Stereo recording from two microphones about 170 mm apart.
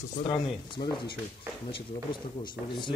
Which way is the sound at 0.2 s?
30° left (ahead or behind).